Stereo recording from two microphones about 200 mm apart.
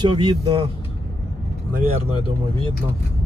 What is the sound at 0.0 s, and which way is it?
Speech, 20° right (ahead or behind).